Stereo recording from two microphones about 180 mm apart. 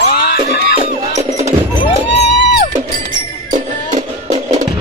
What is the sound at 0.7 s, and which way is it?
Music, 40° right (ahead or behind).